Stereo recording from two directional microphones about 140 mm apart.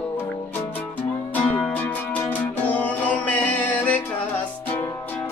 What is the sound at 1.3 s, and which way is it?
Music, 10° left (ahead or behind).